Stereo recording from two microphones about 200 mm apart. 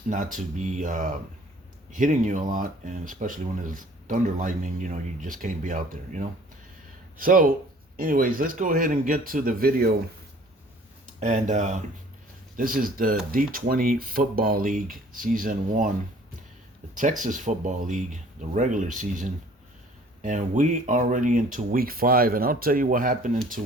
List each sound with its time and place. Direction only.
0.1 s speech: 40° right (ahead or behind)
11.0 s speech: 40° right (ahead or behind)
16.9 s speech: 40° right (ahead or behind)